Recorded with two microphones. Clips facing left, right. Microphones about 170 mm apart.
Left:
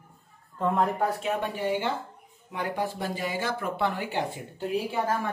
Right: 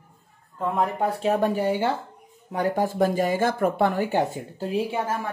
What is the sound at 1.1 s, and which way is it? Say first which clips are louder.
Speech: right 7 dB; 35° right (ahead or behind).